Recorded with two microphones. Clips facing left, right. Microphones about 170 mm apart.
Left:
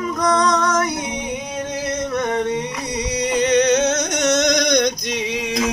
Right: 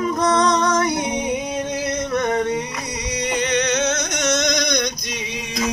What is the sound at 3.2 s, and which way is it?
Music, 35° left (ahead or behind).